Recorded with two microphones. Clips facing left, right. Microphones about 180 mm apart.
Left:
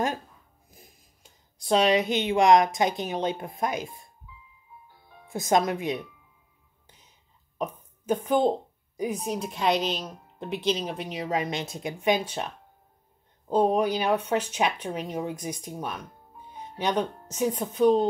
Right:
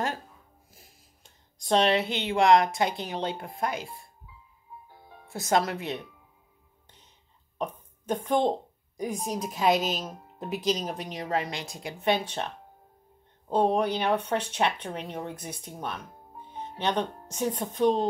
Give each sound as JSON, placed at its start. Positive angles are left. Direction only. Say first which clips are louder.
{"t": 0.7, "sound": "speech", "louder": "left 3 dB", "side_deg": 15}
{"t": 5.3, "sound": "speech", "louder": "left 2 dB", "side_deg": 15}
{"t": 7.5, "sound": "burping", "louder": "left 1 dB", "side_deg": 10}
{"t": 8.3, "sound": "a woman's voice", "louder": "left 1 dB", "side_deg": 10}
{"t": 11.4, "sound": "speech", "louder": "left 5 dB", "side_deg": 20}
{"t": 12.0, "sound": "speech", "louder": "left 1 dB", "side_deg": 10}